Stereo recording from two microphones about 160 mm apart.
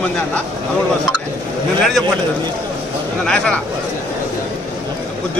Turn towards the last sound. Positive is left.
turn(degrees=5)  # may be behind; listen again after turning